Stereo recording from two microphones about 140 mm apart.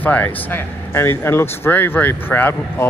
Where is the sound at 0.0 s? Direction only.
10° left (ahead or behind).